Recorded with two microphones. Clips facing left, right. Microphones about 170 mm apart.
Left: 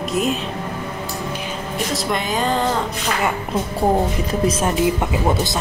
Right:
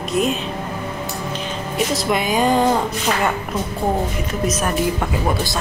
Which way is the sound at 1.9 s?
10° right (ahead or behind).